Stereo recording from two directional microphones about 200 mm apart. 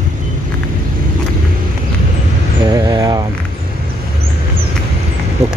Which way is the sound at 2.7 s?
20° right (ahead or behind).